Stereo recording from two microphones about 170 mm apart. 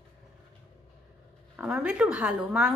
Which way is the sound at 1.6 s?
5° right (ahead or behind).